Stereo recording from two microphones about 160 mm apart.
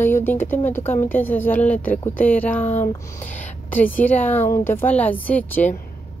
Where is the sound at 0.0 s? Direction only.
15° left (ahead or behind).